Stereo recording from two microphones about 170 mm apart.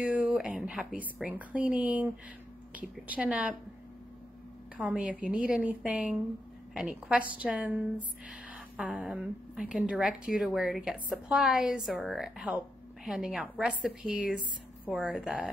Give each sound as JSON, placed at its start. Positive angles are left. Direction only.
{"t": 0.0, "sound": "speech", "side_deg": -10}
{"t": 4.7, "sound": "a woman's voice", "side_deg": -5}